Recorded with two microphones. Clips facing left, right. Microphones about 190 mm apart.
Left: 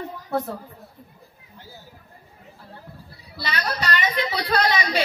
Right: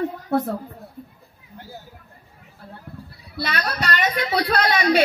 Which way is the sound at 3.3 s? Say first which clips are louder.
Right 2 dB; 55° right (ahead or behind).